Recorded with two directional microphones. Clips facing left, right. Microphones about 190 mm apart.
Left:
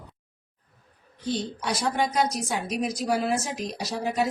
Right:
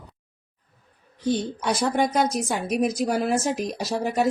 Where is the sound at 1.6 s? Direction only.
50° right (ahead or behind).